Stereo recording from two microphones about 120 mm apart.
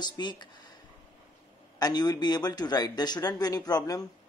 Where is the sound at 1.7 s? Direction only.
35° left (ahead or behind).